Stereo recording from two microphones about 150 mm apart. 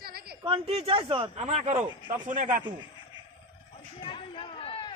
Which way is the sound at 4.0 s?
35° left (ahead or behind).